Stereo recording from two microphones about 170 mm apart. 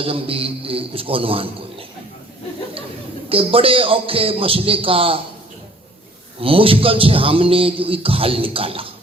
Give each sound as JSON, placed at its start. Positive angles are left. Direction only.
{"t": 0.0, "sound": "speech", "side_deg": -35}
{"t": 3.2, "sound": "speech", "side_deg": -35}
{"t": 6.4, "sound": "speech", "side_deg": -30}